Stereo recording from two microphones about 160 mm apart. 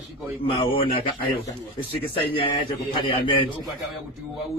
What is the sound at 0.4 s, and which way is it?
A man's voice, 35° left (ahead or behind).